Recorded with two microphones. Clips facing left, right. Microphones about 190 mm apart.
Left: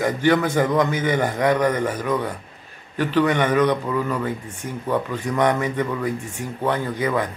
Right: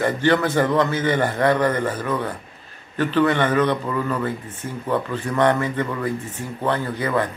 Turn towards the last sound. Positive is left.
turn(degrees=10)  # may be behind; listen again after turning